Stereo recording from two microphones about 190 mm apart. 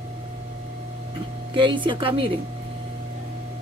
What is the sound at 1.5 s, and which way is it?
Speech, 25° right (ahead or behind).